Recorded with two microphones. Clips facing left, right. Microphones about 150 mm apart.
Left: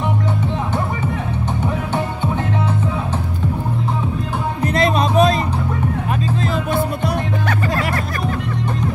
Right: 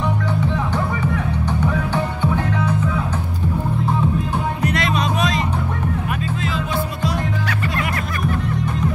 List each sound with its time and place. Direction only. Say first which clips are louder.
4.9 s music: left 6 dB; 30° left (ahead or behind)